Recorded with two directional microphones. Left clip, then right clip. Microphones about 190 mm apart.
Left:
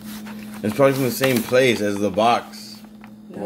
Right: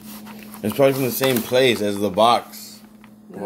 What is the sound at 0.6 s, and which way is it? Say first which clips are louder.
Speech: even; 15° right (ahead or behind).